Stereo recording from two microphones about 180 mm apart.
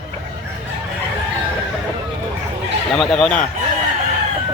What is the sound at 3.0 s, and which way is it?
Speech, centre (ahead or behind).